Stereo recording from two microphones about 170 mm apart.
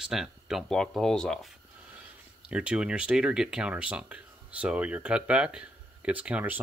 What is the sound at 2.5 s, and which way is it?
Speech, 5° right (ahead or behind).